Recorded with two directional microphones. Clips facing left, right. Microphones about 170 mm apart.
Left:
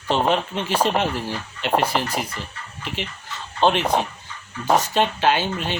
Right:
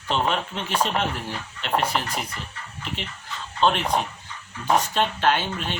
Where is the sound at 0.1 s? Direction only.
30° left (ahead or behind).